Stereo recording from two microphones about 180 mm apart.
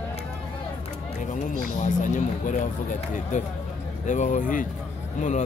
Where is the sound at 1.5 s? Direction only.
45° left (ahead or behind).